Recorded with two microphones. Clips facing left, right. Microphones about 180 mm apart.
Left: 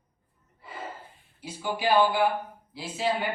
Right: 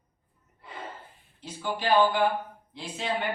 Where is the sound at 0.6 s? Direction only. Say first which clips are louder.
Left 1 dB; centre (ahead or behind).